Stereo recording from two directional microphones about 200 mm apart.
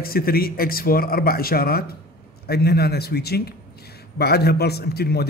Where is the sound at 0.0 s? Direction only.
50° left (ahead or behind).